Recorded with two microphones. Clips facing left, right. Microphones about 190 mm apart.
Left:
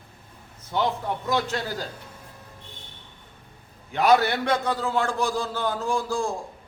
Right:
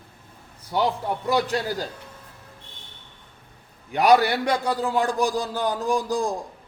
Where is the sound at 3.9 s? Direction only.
15° right (ahead or behind).